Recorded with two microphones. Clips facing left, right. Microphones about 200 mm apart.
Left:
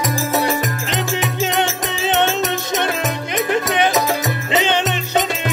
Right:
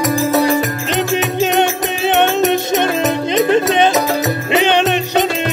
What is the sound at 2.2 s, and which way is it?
Music, 15° right (ahead or behind).